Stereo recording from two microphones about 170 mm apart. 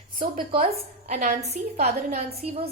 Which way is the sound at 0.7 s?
45° right (ahead or behind).